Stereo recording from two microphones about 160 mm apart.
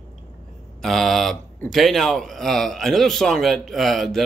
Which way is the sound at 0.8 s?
Centre (ahead or behind).